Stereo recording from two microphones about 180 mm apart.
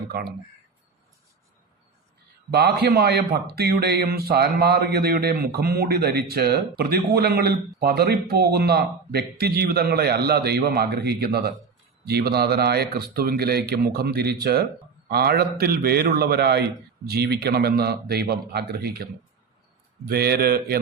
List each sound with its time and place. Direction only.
0.1 s speech: 60° right (ahead or behind)
2.5 s speech: 65° right (ahead or behind)
20.1 s speech: 60° right (ahead or behind)